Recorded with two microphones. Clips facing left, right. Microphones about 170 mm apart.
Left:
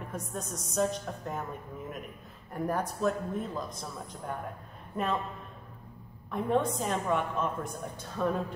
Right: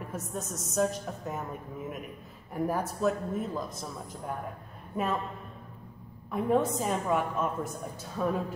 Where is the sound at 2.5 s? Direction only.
5° right (ahead or behind).